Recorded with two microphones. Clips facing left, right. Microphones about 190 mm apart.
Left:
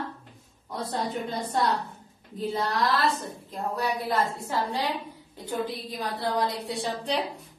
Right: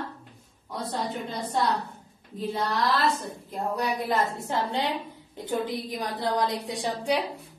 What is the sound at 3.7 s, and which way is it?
A woman's voice, 20° right (ahead or behind).